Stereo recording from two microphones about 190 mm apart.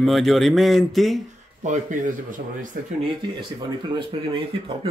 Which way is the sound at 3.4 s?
25° right (ahead or behind).